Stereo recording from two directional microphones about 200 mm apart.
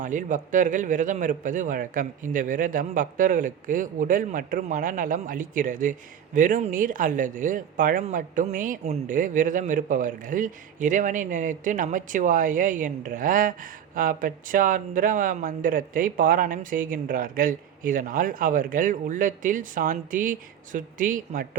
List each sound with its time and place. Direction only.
0.0 s a man's voice: 40° right (ahead or behind)